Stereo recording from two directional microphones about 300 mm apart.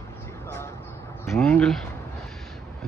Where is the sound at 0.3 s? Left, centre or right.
Centre.